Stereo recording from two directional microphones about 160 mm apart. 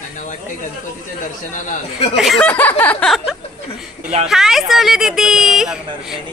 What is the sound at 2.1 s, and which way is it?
Speech, centre (ahead or behind).